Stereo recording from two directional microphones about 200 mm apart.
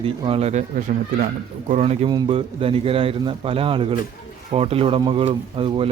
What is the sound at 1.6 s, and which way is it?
A man's voice, 30° right (ahead or behind).